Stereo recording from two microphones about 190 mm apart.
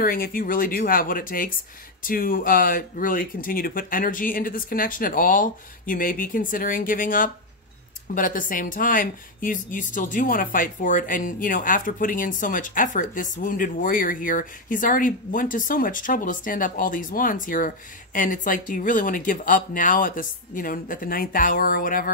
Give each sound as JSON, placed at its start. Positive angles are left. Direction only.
{"t": 0.0, "sound": "a woman's voice", "side_deg": 50}